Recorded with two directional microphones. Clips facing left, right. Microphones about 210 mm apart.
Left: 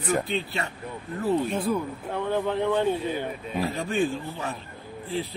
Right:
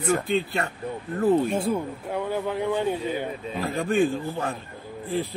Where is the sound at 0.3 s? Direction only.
50° right (ahead or behind).